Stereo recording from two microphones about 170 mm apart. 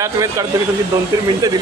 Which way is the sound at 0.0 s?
20° right (ahead or behind).